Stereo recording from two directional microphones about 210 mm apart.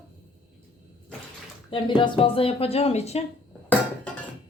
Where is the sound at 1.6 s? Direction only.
25° left (ahead or behind).